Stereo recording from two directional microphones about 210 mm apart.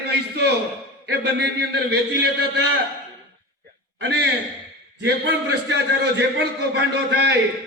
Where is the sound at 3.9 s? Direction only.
55° right (ahead or behind).